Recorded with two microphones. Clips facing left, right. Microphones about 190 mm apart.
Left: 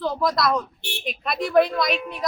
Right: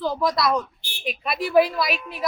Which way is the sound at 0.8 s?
70° left (ahead or behind).